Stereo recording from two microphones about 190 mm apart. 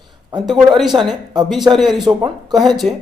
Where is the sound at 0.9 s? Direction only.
25° right (ahead or behind).